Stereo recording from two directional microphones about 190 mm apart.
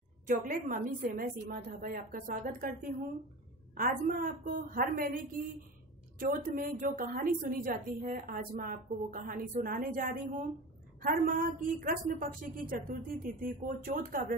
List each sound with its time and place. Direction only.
0.3 s a woman's voice: 45° right (ahead or behind)